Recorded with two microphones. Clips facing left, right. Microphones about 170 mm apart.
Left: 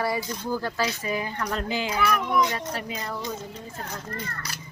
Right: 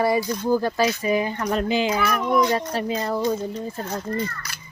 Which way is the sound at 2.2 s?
35° right (ahead or behind).